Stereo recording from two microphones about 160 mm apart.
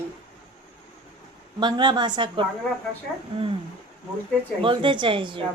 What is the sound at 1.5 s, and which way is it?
Speech, 30° right (ahead or behind).